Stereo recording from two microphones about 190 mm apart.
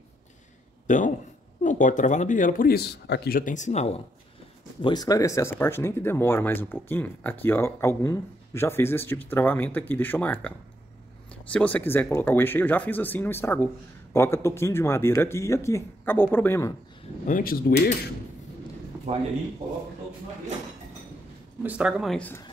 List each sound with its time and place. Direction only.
0.8 s speech: 40° left (ahead or behind)
4.8 s speech: 20° left (ahead or behind)
11.5 s speech: 10° left (ahead or behind)
17.3 s speech: 50° left (ahead or behind)
21.6 s speech: 5° right (ahead or behind)